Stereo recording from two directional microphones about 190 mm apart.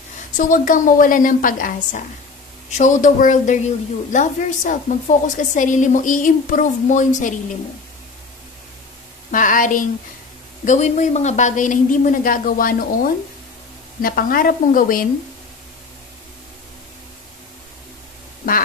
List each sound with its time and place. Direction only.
0.4 s a woman's voice: 45° left (ahead or behind)
9.3 s speech: 45° left (ahead or behind)